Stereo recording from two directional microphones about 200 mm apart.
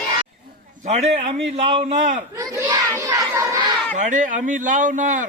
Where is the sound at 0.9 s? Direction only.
30° right (ahead or behind).